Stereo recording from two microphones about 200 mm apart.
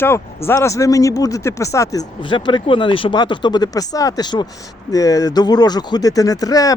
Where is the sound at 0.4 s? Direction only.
15° left (ahead or behind).